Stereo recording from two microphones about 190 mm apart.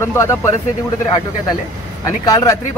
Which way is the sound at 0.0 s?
15° left (ahead or behind).